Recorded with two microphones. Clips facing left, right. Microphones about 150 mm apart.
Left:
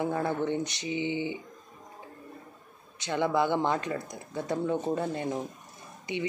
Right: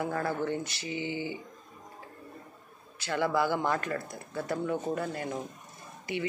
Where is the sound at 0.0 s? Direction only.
20° left (ahead or behind).